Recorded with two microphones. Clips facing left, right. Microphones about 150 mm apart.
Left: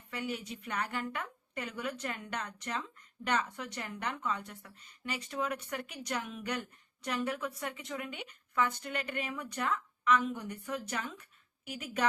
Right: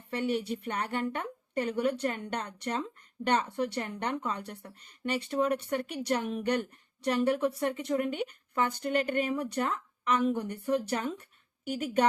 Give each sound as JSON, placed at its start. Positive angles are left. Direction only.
{"t": 0.1, "sound": "speech", "side_deg": -35}